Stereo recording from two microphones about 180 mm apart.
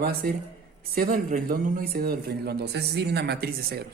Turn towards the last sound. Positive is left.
turn(degrees=-60)  # may be behind; listen again after turning